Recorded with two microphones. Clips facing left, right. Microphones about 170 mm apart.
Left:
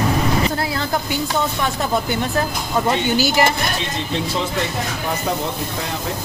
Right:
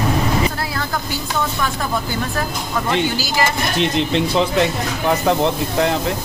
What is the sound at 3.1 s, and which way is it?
Speech, 20° left (ahead or behind).